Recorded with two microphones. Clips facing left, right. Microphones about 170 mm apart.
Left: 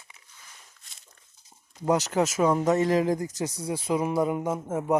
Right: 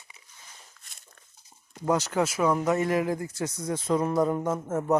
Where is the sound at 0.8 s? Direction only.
50° right (ahead or behind).